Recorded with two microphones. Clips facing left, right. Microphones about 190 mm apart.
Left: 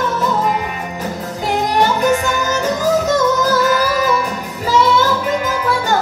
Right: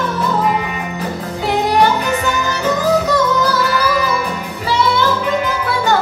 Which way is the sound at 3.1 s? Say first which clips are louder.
Left 1 dB; 45° left (ahead or behind).